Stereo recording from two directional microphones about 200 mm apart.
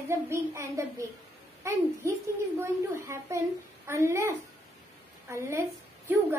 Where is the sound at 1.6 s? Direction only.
15° right (ahead or behind).